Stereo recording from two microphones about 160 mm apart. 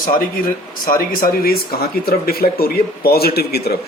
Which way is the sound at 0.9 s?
65° left (ahead or behind).